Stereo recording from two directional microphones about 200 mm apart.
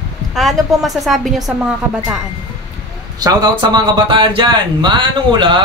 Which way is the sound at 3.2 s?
20° right (ahead or behind).